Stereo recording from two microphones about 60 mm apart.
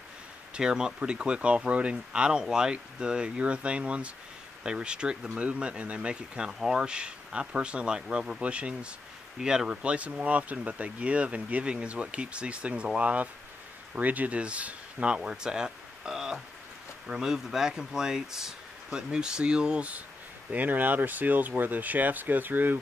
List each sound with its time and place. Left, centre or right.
0.6 s speech: centre
20.5 s speech: right